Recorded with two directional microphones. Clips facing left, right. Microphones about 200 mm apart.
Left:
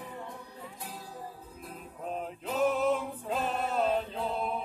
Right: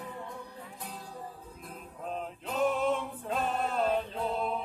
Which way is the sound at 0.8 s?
5° left (ahead or behind).